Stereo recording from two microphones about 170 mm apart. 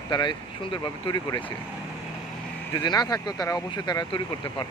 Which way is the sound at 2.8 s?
25° left (ahead or behind).